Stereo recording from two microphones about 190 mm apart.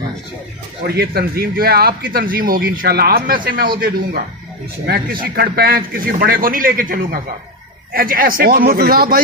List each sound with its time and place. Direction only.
0.8 s a man's voice: 55° right (ahead or behind)
5.2 s a man's voice: 50° right (ahead or behind)